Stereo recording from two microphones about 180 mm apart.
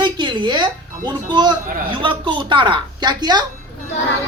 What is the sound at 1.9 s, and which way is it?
Speech, 30° right (ahead or behind).